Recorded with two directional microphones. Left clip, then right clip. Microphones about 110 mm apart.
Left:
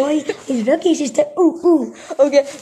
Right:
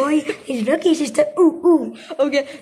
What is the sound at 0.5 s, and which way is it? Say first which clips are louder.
Speech: left 2 dB; 15° right (ahead or behind).